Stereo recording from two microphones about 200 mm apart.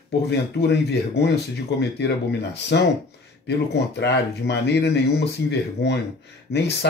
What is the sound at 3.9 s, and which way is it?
Speech, 55° left (ahead or behind).